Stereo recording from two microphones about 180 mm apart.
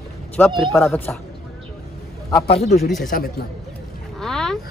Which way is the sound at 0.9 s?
10° left (ahead or behind).